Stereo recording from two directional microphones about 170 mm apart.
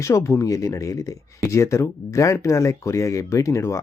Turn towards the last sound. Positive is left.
turn(degrees=15)  # may be behind; listen again after turning